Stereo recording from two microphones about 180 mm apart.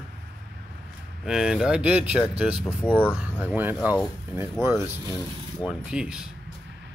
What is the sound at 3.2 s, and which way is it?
Speech, 10° right (ahead or behind).